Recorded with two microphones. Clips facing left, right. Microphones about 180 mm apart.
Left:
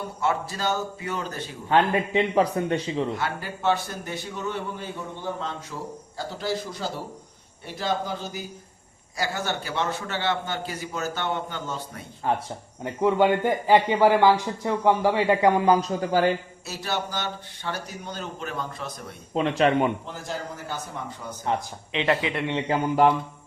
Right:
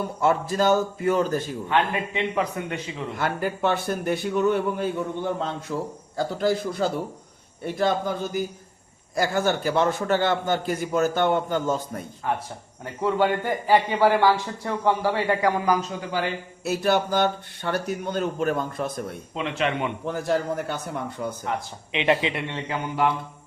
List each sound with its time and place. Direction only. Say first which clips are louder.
0.2 s a man's voice: right 5 dB; 50° right (ahead or behind)
1.7 s a man's voice: left 4 dB; 35° left (ahead or behind)
3.2 s a man's voice: right 5 dB; 55° right (ahead or behind)
12.2 s speech: left 2 dB; 30° left (ahead or behind)
12.8 s a man's voice: left 2 dB; 15° left (ahead or behind)
15.8 s a man's voice: left 5 dB; 40° left (ahead or behind)
16.6 s speech: right 9 dB; 55° right (ahead or behind)
19.3 s a man's voice: left 6 dB; 40° left (ahead or behind)
20.1 s speech: right 9 dB; 60° right (ahead or behind)
21.5 s speech: left 4 dB; 30° left (ahead or behind)
21.9 s speech: right 2 dB; 15° right (ahead or behind)